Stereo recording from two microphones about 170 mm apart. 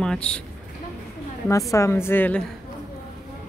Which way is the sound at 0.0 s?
5° left (ahead or behind).